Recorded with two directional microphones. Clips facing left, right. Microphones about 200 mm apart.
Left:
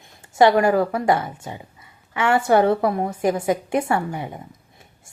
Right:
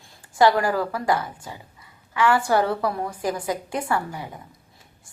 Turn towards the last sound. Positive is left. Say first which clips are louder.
# left 3 dB
turn(degrees=25)  # may be behind; listen again after turning